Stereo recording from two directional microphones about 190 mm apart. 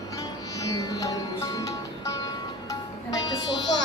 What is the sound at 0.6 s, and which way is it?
Music, 20° left (ahead or behind).